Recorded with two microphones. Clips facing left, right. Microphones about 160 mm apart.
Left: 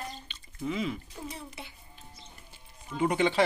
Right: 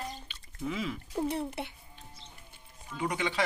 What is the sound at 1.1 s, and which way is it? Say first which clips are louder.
Speech: right 10 dB; 55° right (ahead or behind).